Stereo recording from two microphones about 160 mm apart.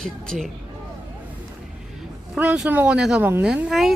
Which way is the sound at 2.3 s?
10° right (ahead or behind).